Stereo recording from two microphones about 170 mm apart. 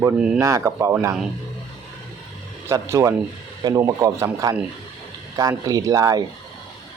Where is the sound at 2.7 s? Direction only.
15° right (ahead or behind).